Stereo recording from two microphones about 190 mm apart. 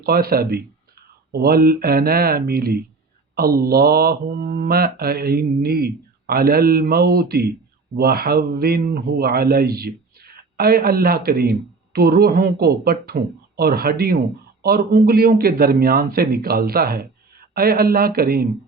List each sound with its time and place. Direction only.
0.0 s mantra: 55° right (ahead or behind)